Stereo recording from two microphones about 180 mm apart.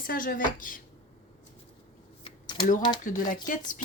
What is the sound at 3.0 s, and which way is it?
Speech, 45° left (ahead or behind).